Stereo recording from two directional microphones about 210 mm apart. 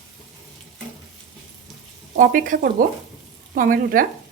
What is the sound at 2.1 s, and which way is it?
Speech, 40° right (ahead or behind).